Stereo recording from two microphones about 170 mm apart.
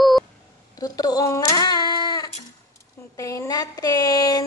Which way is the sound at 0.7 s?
20° left (ahead or behind).